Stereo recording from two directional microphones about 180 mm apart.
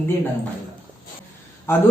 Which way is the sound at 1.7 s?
15° left (ahead or behind).